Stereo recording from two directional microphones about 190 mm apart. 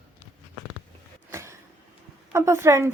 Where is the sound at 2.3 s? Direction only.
15° right (ahead or behind).